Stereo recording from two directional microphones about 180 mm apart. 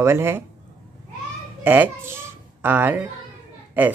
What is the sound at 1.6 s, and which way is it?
Speech, 10° right (ahead or behind).